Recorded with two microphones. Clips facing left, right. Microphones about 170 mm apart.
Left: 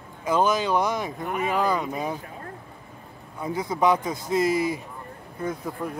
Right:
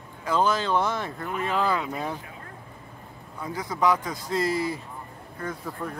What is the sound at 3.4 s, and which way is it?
A man's voice, 20° left (ahead or behind).